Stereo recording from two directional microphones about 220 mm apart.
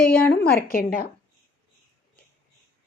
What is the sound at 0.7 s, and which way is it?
Speech, 40° left (ahead or behind).